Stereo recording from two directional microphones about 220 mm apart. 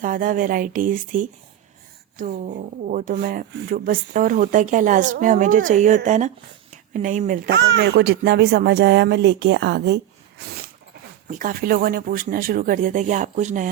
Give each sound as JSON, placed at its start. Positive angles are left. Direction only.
{"t": 0.0, "sound": "speech", "side_deg": -35}